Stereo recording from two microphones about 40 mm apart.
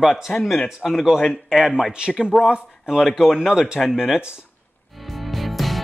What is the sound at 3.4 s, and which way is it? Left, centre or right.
Speech, centre.